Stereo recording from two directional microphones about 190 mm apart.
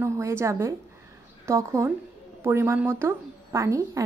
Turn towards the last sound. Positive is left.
turn(degrees=-15)  # may be behind; listen again after turning